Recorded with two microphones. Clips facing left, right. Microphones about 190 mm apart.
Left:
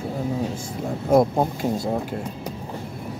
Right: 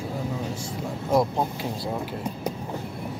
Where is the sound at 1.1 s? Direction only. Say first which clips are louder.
Left 5 dB; 50° left (ahead or behind).